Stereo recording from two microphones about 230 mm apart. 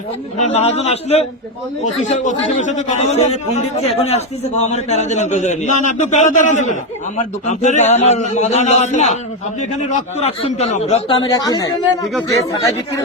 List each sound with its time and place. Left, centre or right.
0.3 s a man's voice: left